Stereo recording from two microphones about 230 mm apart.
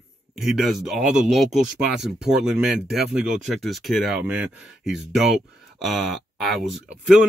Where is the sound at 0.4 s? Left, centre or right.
Centre.